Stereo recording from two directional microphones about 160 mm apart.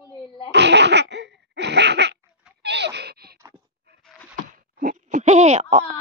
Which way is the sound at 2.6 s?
90° right.